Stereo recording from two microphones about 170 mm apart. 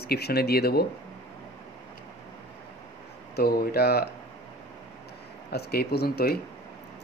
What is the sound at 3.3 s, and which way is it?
Speech, 65° left (ahead or behind).